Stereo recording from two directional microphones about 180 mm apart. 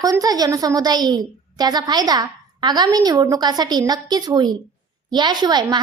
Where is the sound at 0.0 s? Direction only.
20° right (ahead or behind).